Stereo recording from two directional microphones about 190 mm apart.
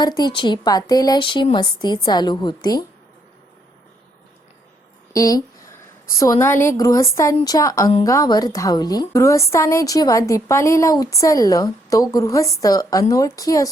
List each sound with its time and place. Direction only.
0.0 s speech: 20° left (ahead or behind)
5.1 s a woman's voice: 20° left (ahead or behind)